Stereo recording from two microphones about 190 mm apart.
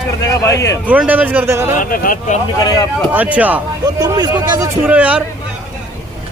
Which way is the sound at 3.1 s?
10° right (ahead or behind).